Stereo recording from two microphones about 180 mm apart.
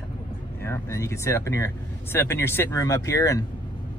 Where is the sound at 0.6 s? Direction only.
15° left (ahead or behind).